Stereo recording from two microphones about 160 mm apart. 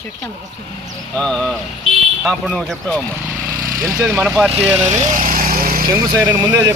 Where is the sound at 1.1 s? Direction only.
5° left (ahead or behind).